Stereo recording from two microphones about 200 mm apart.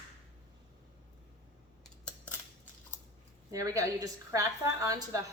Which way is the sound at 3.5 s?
15° right (ahead or behind).